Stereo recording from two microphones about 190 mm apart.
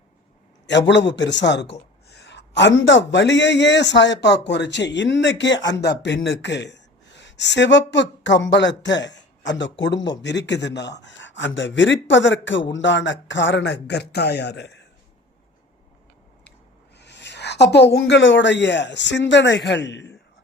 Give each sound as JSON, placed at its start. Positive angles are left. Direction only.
{"t": 0.7, "sound": "a man's voice", "side_deg": 70}
{"t": 17.0, "sound": "speech", "side_deg": 65}